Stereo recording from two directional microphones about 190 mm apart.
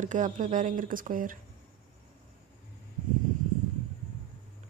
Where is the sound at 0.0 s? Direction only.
40° right (ahead or behind).